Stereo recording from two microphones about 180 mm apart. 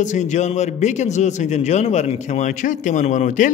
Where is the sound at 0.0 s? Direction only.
40° left (ahead or behind).